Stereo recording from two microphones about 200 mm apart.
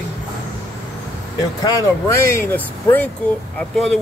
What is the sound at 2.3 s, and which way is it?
Speech, 10° left (ahead or behind).